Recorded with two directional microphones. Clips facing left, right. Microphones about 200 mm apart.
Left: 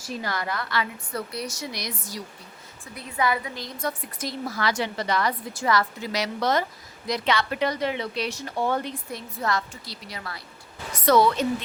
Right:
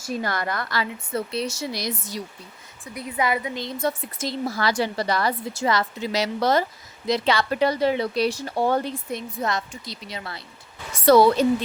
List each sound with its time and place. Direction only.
0.2 s a woman's voice: 55° right (ahead or behind)
0.8 s a woman's voice: 25° right (ahead or behind)
5.5 s a woman's voice: 25° right (ahead or behind)
9.4 s a woman's voice: 20° right (ahead or behind)